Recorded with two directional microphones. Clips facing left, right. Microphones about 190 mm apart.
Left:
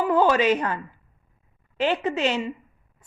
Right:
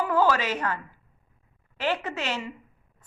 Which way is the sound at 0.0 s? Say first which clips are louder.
Left 4 dB; 20° left (ahead or behind).